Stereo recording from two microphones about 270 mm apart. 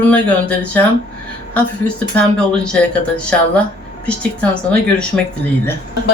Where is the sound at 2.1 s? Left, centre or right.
Centre.